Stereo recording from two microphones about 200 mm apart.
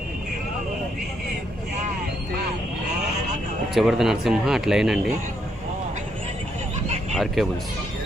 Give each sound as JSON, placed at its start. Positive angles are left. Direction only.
{"t": 3.8, "sound": "speech", "side_deg": 0}
{"t": 7.4, "sound": "speech", "side_deg": 0}